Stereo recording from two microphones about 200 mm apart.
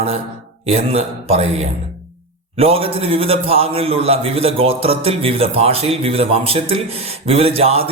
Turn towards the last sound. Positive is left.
turn(degrees=-30)  # may be behind; listen again after turning